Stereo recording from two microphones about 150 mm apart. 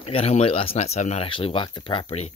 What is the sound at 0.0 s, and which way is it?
Speech, 40° left (ahead or behind).